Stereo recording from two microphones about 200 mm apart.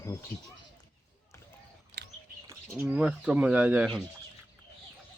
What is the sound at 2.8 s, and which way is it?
Speech, 5° right (ahead or behind).